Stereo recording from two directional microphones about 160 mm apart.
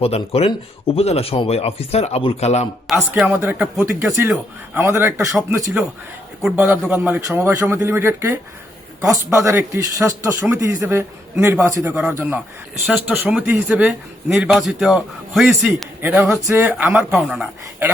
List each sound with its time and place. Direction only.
0.0 s speech: 40° left (ahead or behind)
3.2 s speech: 5° right (ahead or behind)
3.4 s speech: 15° right (ahead or behind)
16.0 s speech: 10° right (ahead or behind)